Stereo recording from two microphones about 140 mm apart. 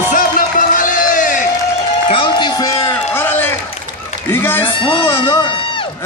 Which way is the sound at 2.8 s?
15° left (ahead or behind).